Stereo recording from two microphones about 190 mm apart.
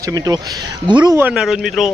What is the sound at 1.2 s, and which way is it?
Speech, 5° right (ahead or behind).